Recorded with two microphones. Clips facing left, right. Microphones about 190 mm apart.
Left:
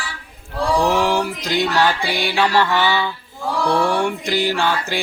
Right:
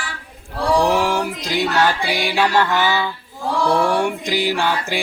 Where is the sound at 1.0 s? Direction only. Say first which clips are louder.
Left 1 dB; 10° right (ahead or behind).